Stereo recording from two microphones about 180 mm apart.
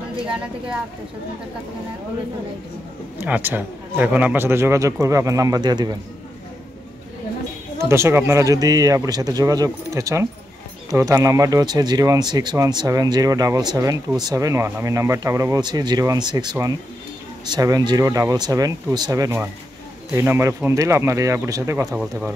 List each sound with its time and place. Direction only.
3.2 s speech: 10° right (ahead or behind)
7.8 s speech: 15° right (ahead or behind)